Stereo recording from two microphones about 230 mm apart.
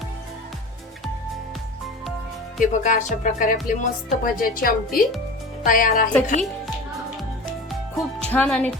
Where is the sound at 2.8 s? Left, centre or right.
Left.